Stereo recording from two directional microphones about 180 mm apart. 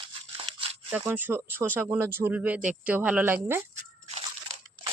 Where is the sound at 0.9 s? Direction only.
10° right (ahead or behind).